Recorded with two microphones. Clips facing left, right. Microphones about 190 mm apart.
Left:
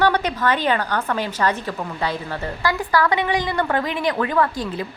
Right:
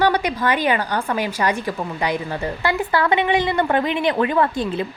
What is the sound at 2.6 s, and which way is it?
Speech, 25° right (ahead or behind).